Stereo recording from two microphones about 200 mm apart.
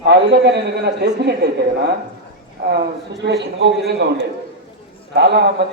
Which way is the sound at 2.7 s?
55° right (ahead or behind).